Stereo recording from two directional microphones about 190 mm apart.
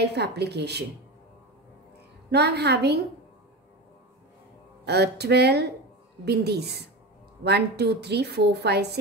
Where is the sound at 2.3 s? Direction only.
60° right (ahead or behind).